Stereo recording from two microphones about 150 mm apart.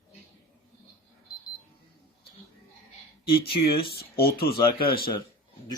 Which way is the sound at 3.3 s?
90° left.